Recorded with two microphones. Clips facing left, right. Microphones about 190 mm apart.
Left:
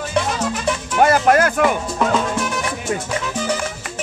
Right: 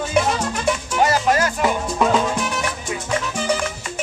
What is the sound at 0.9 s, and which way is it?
Music, 55° left (ahead or behind).